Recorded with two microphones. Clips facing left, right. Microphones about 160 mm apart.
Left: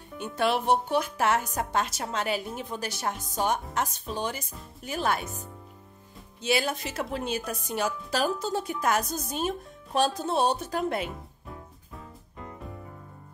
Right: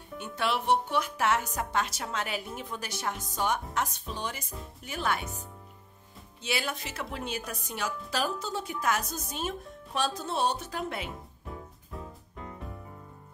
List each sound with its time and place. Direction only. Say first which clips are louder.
0.4 s a woman's voice: left 3 dB; 40° left (ahead or behind)
6.4 s a woman's voice: left 6 dB; 40° left (ahead or behind)
11.5 s music: right 4 dB; centre (ahead or behind)